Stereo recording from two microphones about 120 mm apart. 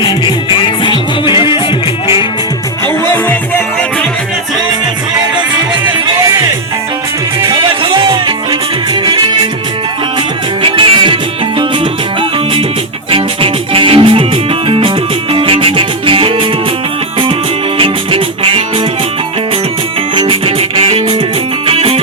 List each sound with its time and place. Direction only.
0.0 s music: 40° left (ahead or behind)
2.8 s music: 20° left (ahead or behind)
5.8 s music: 25° right (ahead or behind)
7.4 s music: 45° right (ahead or behind)
10.6 s music: 45° right (ahead or behind)
13.1 s music: 50° right (ahead or behind)
17.7 s music: 50° right (ahead or behind)
20.1 s music: 50° right (ahead or behind)